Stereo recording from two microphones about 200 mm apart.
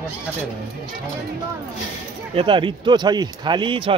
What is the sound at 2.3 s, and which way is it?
Speech, 25° right (ahead or behind).